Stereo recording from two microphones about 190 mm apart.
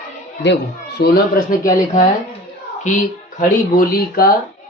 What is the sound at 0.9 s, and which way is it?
Speech, 55° left (ahead or behind).